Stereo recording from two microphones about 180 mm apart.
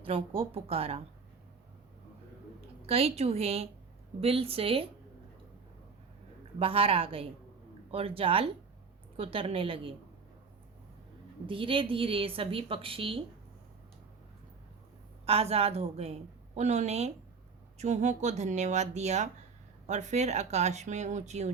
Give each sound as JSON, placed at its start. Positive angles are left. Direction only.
{"t": 0.0, "sound": "a woman's voice", "side_deg": -30}
{"t": 2.8, "sound": "a woman's voice", "side_deg": -35}
{"t": 6.6, "sound": "a woman's voice", "side_deg": -30}
{"t": 11.4, "sound": "a woman's voice", "side_deg": -30}
{"t": 15.3, "sound": "a woman's voice", "side_deg": -35}